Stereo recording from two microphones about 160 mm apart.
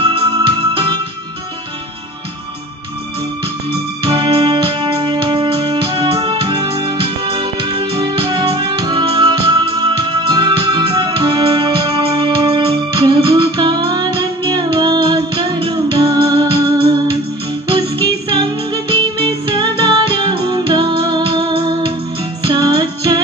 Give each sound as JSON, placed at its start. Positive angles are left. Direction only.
{"t": 0.0, "sound": "music", "side_deg": -30}
{"t": 4.0, "sound": "music", "side_deg": -25}